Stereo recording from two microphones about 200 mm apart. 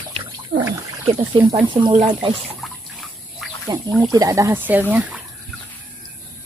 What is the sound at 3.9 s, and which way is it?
Speech, centre (ahead or behind).